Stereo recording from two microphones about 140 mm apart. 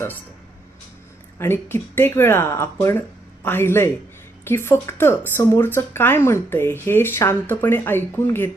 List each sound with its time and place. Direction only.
1.4 s speech: 15° left (ahead or behind)